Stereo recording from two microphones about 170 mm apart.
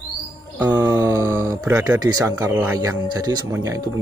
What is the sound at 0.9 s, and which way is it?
Speech, 20° right (ahead or behind).